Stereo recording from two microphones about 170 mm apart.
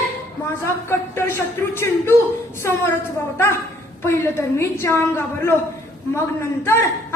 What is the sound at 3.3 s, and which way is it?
A woman's voice, 15° left (ahead or behind).